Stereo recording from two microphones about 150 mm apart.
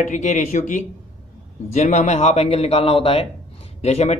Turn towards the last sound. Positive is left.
turn(degrees=45)  # may be behind; listen again after turning